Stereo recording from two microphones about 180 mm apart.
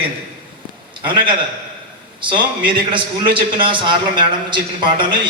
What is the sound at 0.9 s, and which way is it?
A man's voice, 25° right (ahead or behind).